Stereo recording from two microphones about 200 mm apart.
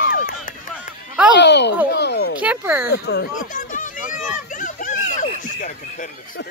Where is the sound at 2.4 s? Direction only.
5° right (ahead or behind).